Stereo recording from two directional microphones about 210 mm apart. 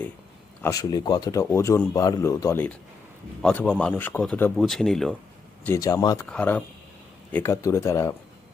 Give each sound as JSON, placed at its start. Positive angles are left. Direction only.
{"t": 0.6, "sound": "a man's voice", "side_deg": 15}
{"t": 5.6, "sound": "speech", "side_deg": 15}
{"t": 6.2, "sound": "a man's voice", "side_deg": 5}